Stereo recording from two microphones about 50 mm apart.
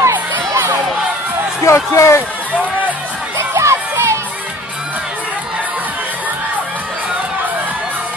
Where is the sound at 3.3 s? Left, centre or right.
Right.